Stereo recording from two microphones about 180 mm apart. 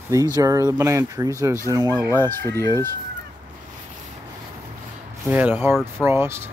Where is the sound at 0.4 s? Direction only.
20° right (ahead or behind).